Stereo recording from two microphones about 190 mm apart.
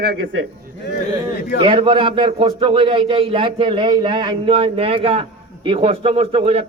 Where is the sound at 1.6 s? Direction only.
25° right (ahead or behind).